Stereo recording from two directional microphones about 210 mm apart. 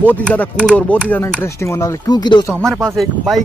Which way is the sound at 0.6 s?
5° left (ahead or behind).